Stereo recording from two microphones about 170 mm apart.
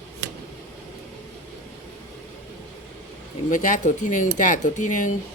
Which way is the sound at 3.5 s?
50° left (ahead or behind).